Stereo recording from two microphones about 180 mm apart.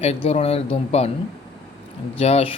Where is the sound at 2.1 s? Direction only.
35° left (ahead or behind).